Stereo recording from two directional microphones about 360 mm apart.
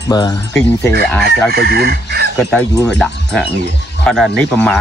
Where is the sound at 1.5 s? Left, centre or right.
Right.